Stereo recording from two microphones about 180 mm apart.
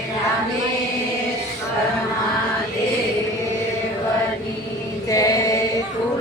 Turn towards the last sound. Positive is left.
turn(degrees=20)  # may be behind; listen again after turning